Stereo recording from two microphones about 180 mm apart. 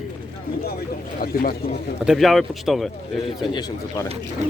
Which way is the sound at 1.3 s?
55° left (ahead or behind).